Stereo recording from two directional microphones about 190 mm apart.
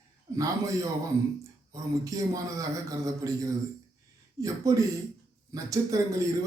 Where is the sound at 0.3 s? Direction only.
15° right (ahead or behind).